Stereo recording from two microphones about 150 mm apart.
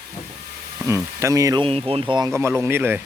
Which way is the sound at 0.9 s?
20° right (ahead or behind).